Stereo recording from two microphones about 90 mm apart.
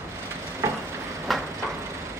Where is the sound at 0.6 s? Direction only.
30° right (ahead or behind).